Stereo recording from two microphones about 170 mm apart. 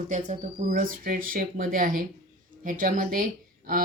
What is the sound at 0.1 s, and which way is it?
Speech, 50° right (ahead or behind).